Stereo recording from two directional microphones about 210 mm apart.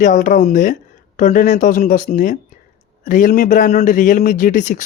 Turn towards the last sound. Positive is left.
turn(degrees=40)  # may be behind; listen again after turning